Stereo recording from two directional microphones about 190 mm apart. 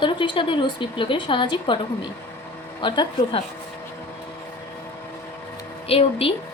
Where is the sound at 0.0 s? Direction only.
25° left (ahead or behind).